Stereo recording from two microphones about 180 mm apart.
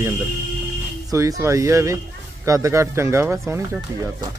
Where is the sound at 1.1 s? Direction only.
15° right (ahead or behind).